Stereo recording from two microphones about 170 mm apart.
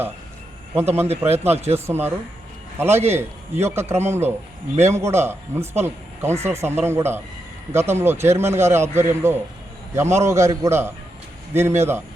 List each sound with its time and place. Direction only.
1.0 s speech: 40° right (ahead or behind)
1.9 s a man's voice: 15° right (ahead or behind)